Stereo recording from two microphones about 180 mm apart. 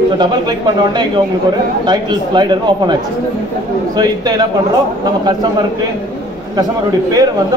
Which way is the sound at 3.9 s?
20° right (ahead or behind).